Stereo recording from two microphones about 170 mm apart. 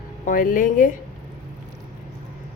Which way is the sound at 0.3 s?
55° left (ahead or behind).